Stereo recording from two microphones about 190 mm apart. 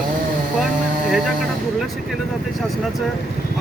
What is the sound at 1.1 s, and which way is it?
Speech, centre (ahead or behind).